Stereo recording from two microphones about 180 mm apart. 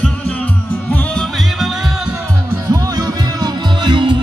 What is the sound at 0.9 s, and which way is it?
Music, 5° left (ahead or behind).